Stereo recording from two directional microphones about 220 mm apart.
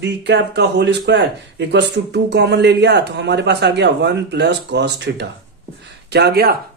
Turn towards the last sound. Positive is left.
turn(degrees=-45)  # may be behind; listen again after turning